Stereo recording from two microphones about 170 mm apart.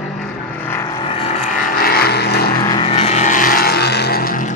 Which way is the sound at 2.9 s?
40° left (ahead or behind).